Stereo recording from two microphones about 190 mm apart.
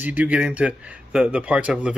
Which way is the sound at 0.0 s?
10° right (ahead or behind).